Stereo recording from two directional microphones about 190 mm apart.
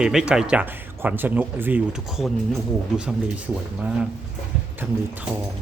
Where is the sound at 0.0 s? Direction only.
5° right (ahead or behind).